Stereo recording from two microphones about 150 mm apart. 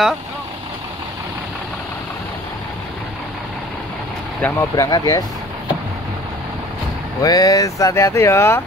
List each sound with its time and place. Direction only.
4.4 s speech: 15° left (ahead or behind)
4.7 s speech: 25° left (ahead or behind)
7.2 s speech: 25° left (ahead or behind)